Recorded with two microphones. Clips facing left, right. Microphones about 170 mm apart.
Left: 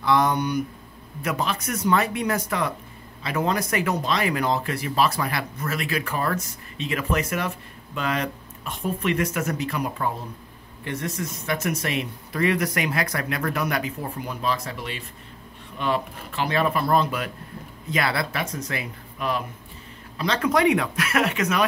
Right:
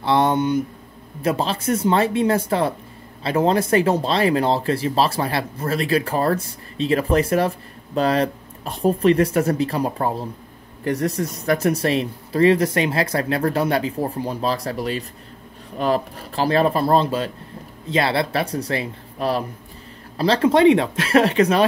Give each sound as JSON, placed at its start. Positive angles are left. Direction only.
{"t": 0.0, "sound": "speech", "side_deg": -30}